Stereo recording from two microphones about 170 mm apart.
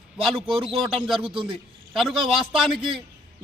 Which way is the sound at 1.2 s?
30° right (ahead or behind).